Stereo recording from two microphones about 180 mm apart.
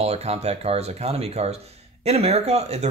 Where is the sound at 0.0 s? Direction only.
35° right (ahead or behind).